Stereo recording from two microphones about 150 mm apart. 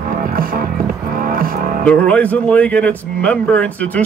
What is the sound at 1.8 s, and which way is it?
Speech, 10° left (ahead or behind).